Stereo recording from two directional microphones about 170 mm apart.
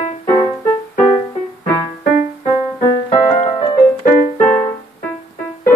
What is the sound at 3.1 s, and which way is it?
Music, 30° left (ahead or behind).